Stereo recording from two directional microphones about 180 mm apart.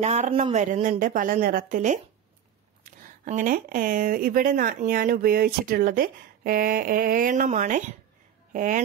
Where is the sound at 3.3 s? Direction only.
45° right (ahead or behind).